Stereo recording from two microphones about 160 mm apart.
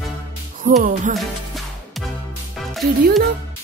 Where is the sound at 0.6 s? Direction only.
55° right (ahead or behind).